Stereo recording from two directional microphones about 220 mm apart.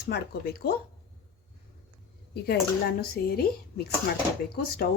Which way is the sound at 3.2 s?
45° left (ahead or behind).